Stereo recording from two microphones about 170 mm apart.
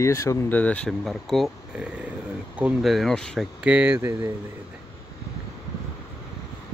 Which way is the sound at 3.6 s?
10° right (ahead or behind).